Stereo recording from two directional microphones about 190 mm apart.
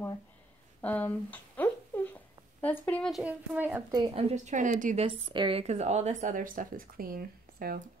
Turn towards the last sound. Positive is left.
turn(degrees=-50)  # may be behind; listen again after turning